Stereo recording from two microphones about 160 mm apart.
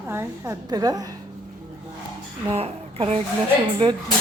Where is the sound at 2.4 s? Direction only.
35° right (ahead or behind).